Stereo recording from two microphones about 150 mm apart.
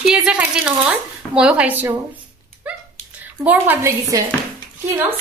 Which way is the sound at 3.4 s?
10° right (ahead or behind).